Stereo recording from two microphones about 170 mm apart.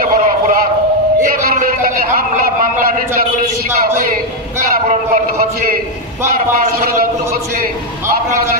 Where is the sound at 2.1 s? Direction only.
55° right (ahead or behind).